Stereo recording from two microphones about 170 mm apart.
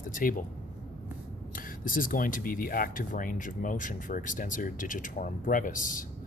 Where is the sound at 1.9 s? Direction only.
55° left (ahead or behind).